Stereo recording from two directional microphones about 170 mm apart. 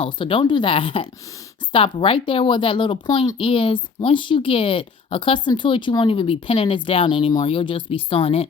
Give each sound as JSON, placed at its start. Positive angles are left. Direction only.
{"t": 0.0, "sound": "speech", "side_deg": 30}